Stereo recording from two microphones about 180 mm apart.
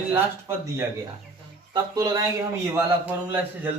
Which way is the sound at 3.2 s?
10° right (ahead or behind).